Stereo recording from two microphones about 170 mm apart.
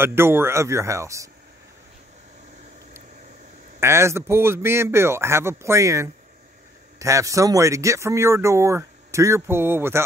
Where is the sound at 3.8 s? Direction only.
15° right (ahead or behind).